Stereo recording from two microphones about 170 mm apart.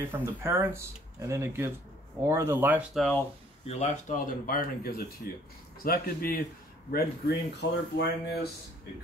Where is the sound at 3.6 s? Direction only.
40° left (ahead or behind); by 6.4 s 60° left (ahead or behind).